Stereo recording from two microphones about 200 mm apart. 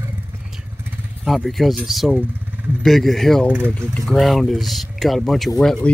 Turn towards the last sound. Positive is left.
turn(degrees=0)  # may be behind; listen again after turning